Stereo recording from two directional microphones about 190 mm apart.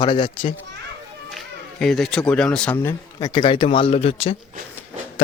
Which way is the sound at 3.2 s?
25° left (ahead or behind).